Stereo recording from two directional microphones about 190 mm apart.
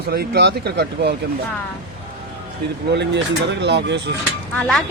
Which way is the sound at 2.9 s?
65° right (ahead or behind).